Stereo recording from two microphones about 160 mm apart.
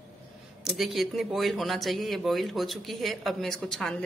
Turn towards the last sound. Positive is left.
turn(degrees=5)  # may be behind; listen again after turning